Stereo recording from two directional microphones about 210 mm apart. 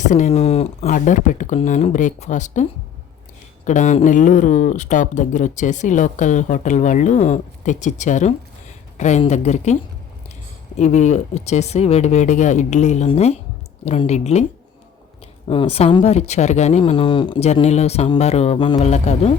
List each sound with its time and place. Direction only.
0.0 s speech: 35° left (ahead or behind)
10.8 s speech: 35° left (ahead or behind)
15.4 s speech: 30° left (ahead or behind)